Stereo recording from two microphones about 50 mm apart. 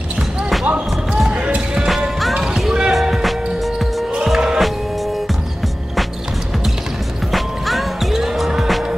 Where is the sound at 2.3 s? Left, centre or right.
Centre.